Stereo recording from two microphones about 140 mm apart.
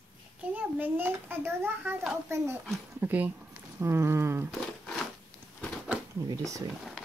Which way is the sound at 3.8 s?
20° right (ahead or behind).